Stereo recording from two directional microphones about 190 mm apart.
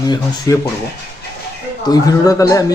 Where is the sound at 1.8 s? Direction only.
20° left (ahead or behind).